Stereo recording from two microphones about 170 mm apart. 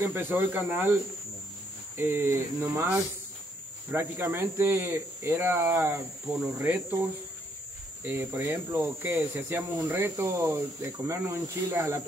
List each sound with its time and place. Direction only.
0.0 s speech: 10° right (ahead or behind)
2.0 s speech: 15° right (ahead or behind)
3.9 s speech: 10° right (ahead or behind)